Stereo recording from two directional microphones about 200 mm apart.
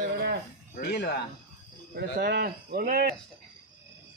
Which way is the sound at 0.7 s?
55° left (ahead or behind).